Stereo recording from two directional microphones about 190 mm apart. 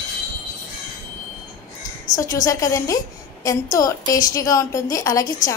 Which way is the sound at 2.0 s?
20° left (ahead or behind).